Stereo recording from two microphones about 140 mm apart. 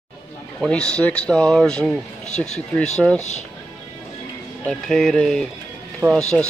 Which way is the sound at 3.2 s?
55° left (ahead or behind).